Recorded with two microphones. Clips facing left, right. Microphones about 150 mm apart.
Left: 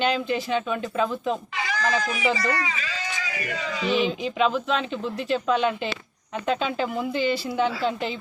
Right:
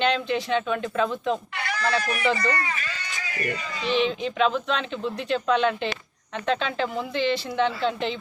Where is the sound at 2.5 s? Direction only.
90° left.